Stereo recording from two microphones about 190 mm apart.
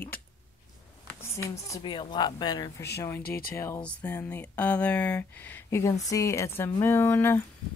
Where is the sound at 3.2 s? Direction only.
50° left (ahead or behind).